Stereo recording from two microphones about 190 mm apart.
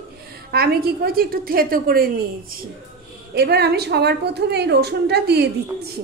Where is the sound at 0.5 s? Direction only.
55° right (ahead or behind).